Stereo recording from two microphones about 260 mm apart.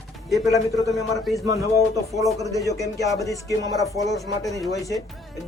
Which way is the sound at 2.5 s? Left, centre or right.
Centre.